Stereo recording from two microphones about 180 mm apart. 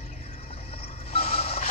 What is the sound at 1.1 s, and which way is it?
Music, 35° left (ahead or behind).